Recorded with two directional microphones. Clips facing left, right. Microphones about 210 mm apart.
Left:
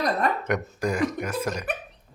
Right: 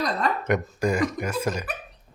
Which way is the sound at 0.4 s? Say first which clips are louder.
Right 2 dB; centre (ahead or behind).